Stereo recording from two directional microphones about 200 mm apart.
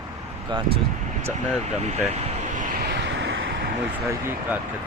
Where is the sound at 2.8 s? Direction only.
60° right (ahead or behind).